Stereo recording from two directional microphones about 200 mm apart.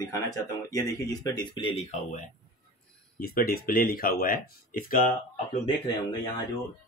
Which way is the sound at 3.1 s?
50° left (ahead or behind).